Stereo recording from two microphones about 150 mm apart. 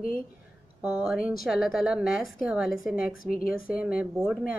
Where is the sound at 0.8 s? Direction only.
5° right (ahead or behind).